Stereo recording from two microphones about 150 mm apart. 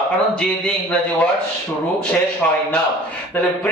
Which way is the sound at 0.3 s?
5° left (ahead or behind).